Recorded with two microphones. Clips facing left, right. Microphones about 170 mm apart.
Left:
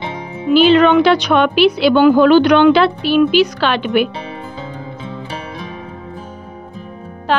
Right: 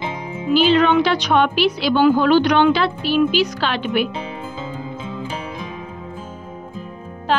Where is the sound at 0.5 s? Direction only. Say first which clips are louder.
Left 5 dB; 65° left (ahead or behind).